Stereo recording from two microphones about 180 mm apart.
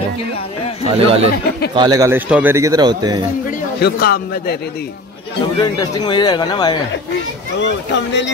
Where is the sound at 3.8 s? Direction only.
60° left (ahead or behind).